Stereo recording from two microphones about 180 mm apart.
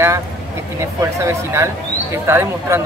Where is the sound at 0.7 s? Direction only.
15° right (ahead or behind).